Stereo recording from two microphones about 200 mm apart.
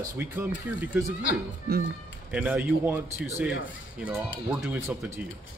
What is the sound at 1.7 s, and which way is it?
Speech, 50° right (ahead or behind).